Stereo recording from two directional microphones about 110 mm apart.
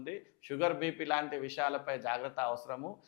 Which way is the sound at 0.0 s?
15° left (ahead or behind).